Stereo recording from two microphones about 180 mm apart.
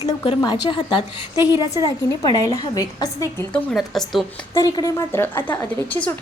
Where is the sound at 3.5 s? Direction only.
5° left (ahead or behind).